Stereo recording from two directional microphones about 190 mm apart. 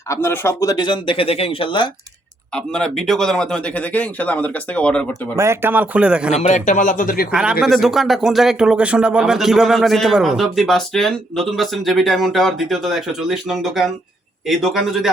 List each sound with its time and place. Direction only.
0.1 s speech: 15° left (ahead or behind)
2.5 s speech: 5° left (ahead or behind)
5.4 s a man's voice: 10° right (ahead or behind)
6.3 s a man's voice: 40° left (ahead or behind)
7.3 s speech: 5° right (ahead or behind)